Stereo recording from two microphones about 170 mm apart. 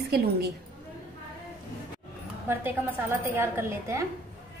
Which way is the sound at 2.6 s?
15° right (ahead or behind).